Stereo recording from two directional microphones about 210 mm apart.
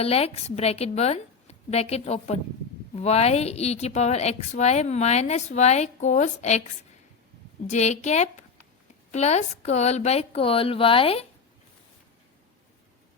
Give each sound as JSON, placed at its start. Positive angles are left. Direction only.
{"t": 0.0, "sound": "a woman's voice", "side_deg": 30}
{"t": 7.7, "sound": "a woman's voice", "side_deg": 35}